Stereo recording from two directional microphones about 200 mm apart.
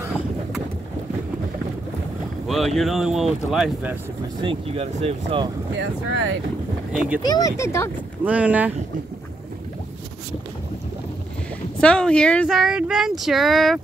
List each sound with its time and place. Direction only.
2.4 s speech: centre (ahead or behind)
4.4 s speech: 25° right (ahead or behind)
5.8 s speech: 65° right (ahead or behind)
6.9 s speech: 5° right (ahead or behind)
7.2 s speech: 20° left (ahead or behind)
8.2 s speech: 5° right (ahead or behind)
11.8 s speech: 5° left (ahead or behind)